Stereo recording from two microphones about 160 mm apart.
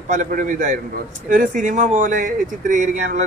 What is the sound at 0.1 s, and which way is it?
A man's voice, 55° right (ahead or behind).